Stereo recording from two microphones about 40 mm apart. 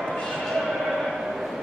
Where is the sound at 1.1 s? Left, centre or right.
Centre.